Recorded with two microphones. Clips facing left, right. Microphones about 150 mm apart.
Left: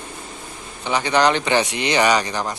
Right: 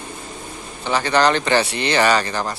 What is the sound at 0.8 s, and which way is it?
Speech, 15° left (ahead or behind).